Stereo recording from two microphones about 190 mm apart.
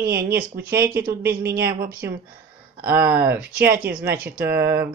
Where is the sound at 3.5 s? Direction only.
50° right (ahead or behind).